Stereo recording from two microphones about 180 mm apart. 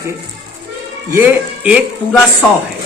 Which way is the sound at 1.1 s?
10° right (ahead or behind).